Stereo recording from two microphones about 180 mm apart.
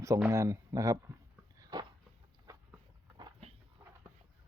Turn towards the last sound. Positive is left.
turn(degrees=-25)  # may be behind; listen again after turning